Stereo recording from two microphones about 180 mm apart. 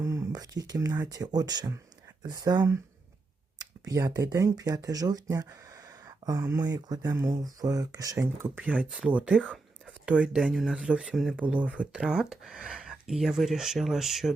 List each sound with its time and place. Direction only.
0.0 s speech: 15° right (ahead or behind); by 14.3 s centre (ahead or behind)